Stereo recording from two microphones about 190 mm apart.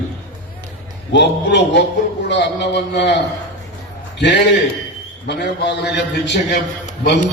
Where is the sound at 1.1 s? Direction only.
65° left (ahead or behind).